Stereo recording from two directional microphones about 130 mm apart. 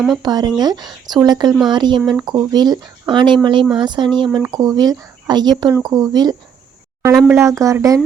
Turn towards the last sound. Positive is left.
turn(degrees=-25)  # may be behind; listen again after turning